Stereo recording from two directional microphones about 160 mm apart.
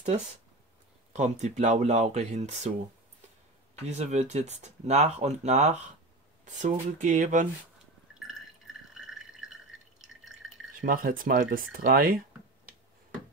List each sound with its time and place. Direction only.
0.0 s speech: 45° right (ahead or behind)
3.8 s speech: 45° right (ahead or behind)
8.2 s drip: centre (ahead or behind)
10.8 s speech: 60° right (ahead or behind)